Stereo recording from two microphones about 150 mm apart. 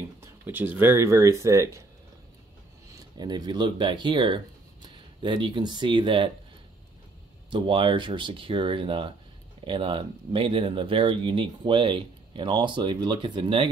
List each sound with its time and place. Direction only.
0.2 s speech: 15° right (ahead or behind)
2.9 s speech: 25° right (ahead or behind)
7.5 s speech: 35° right (ahead or behind)